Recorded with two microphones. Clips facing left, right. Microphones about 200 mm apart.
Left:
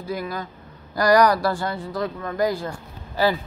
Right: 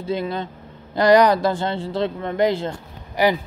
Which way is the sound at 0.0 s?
25° right (ahead or behind).